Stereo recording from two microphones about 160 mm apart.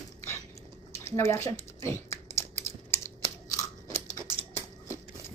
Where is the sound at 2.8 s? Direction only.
15° left (ahead or behind).